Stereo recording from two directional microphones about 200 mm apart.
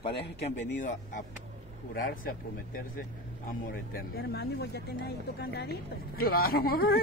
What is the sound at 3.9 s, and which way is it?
Speech, 55° left (ahead or behind).